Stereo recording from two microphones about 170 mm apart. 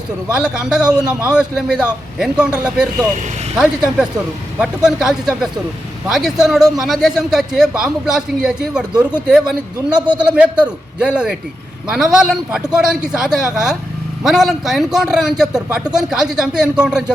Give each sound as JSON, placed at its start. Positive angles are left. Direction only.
{"t": 0.3, "sound": "a man's voice", "side_deg": -5}